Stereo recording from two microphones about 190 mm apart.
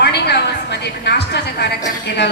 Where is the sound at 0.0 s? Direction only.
60° left (ahead or behind).